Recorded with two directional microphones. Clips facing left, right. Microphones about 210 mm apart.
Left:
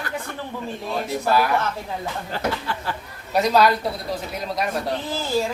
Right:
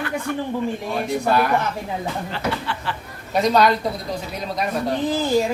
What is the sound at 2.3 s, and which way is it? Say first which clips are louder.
Speech: even; 40° left (ahead or behind).